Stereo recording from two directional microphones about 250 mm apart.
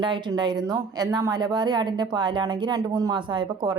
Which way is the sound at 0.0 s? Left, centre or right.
Centre.